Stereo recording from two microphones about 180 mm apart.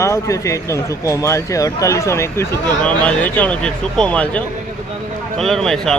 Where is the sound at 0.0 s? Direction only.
15° left (ahead or behind).